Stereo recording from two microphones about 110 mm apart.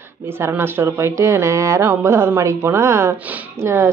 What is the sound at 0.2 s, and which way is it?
Speech, 20° right (ahead or behind).